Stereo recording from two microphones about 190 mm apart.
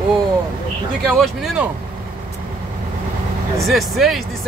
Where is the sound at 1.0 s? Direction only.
Centre (ahead or behind).